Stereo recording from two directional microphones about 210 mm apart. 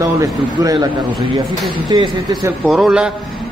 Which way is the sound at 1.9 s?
20° right (ahead or behind).